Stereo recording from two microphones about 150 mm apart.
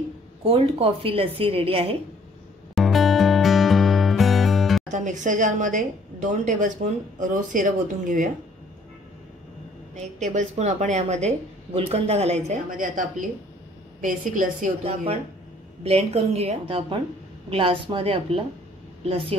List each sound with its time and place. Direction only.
0.4 s a woman's voice: 40° right (ahead or behind)
2.7 s music: centre (ahead or behind)
4.8 s speech: 55° right (ahead or behind)
9.9 s a woman's voice: 50° right (ahead or behind)
12.6 s speech: 65° right (ahead or behind)
14.8 s a woman's voice: 45° right (ahead or behind)